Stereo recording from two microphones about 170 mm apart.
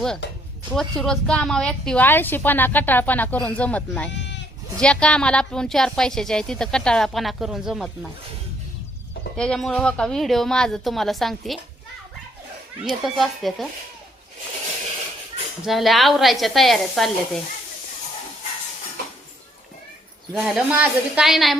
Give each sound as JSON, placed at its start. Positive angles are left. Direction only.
{"t": 0.7, "sound": "a woman's voice", "side_deg": 5}
{"t": 4.1, "sound": "sheep", "side_deg": 90}
{"t": 4.8, "sound": "a woman's voice", "side_deg": 5}
{"t": 9.3, "sound": "a woman's voice", "side_deg": 5}
{"t": 12.8, "sound": "a woman's voice", "side_deg": 0}
{"t": 15.6, "sound": "a woman's voice", "side_deg": 0}
{"t": 20.3, "sound": "a woman's voice", "side_deg": -5}